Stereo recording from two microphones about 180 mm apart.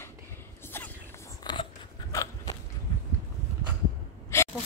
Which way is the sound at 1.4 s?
25° left (ahead or behind).